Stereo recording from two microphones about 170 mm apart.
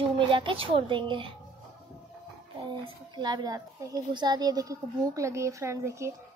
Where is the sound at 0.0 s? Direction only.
30° right (ahead or behind).